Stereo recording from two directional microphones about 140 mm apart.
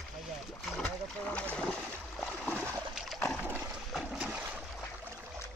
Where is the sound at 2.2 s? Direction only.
5° left (ahead or behind).